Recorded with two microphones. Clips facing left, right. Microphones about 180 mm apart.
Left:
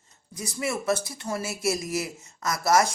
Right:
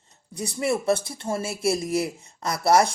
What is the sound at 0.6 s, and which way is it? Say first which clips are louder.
Speech: right 4 dB; 30° right (ahead or behind).